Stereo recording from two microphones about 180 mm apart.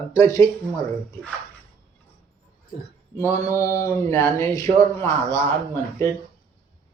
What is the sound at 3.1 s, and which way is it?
Speech, 15° left (ahead or behind).